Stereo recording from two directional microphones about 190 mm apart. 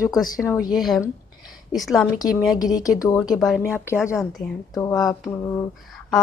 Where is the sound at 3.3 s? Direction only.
Centre (ahead or behind).